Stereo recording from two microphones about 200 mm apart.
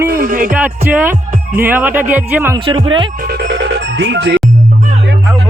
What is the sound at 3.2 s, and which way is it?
Music, 55° right (ahead or behind).